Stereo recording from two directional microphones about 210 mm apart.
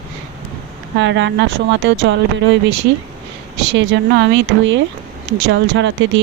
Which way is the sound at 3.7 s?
60° right (ahead or behind).